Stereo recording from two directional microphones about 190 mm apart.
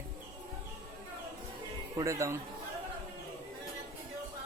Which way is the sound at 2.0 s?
15° right (ahead or behind).